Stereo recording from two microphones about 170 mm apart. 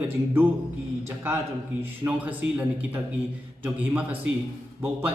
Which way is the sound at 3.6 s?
10° right (ahead or behind).